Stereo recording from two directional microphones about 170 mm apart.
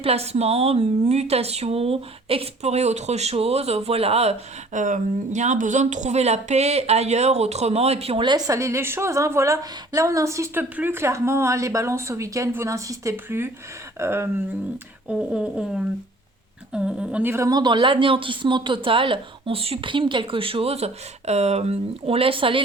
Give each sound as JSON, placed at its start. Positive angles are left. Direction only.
{"t": 0.0, "sound": "speech", "side_deg": -35}